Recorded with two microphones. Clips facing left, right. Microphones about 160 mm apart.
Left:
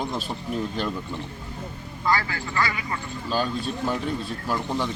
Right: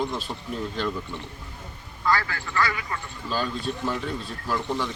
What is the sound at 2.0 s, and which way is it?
Speech, 15° left (ahead or behind).